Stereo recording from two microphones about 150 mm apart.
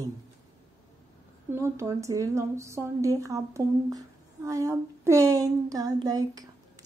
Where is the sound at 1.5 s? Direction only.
20° right (ahead or behind).